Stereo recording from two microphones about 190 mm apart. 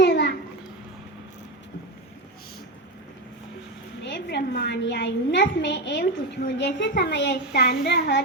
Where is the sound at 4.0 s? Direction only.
65° left (ahead or behind).